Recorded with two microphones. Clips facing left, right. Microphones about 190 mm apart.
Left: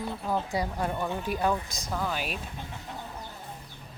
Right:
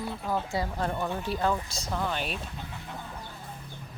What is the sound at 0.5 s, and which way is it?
Speech, 15° left (ahead or behind).